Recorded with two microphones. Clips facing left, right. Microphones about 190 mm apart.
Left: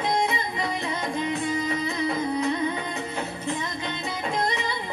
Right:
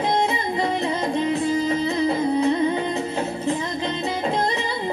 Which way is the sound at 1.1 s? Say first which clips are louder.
Right 5 dB; 30° right (ahead or behind).